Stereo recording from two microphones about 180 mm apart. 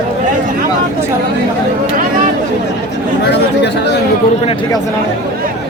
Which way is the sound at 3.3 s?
70° left (ahead or behind).